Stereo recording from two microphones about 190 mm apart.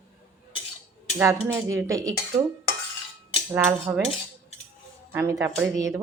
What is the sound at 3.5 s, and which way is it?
Speech, 10° right (ahead or behind).